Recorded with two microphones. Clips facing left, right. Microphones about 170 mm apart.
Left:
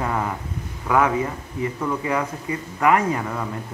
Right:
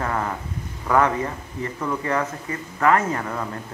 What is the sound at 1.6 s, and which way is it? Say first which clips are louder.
Speech: left 2 dB; 10° left (ahead or behind).